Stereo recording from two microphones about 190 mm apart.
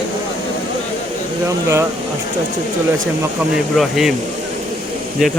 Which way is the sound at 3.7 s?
Centre (ahead or behind).